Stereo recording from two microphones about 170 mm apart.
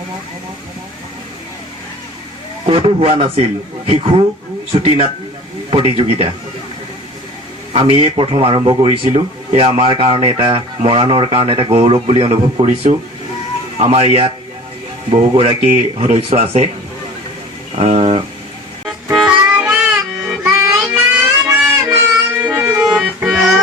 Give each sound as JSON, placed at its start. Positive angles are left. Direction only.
{"t": 2.6, "sound": "a man's voice", "side_deg": -35}
{"t": 7.7, "sound": "a man's voice", "side_deg": -35}
{"t": 17.7, "sound": "a man's voice", "side_deg": -35}
{"t": 18.9, "sound": "music", "side_deg": -5}
{"t": 21.5, "sound": "a sound", "side_deg": -15}
{"t": 22.4, "sound": "music", "side_deg": -10}